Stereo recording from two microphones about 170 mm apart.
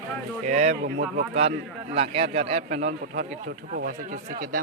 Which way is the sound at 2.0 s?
35° right (ahead or behind).